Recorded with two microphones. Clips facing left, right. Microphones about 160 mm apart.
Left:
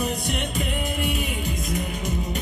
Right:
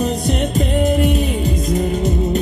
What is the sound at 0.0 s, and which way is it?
Music, 35° right (ahead or behind).